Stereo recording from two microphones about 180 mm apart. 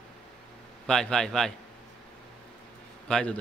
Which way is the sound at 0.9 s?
5° left (ahead or behind).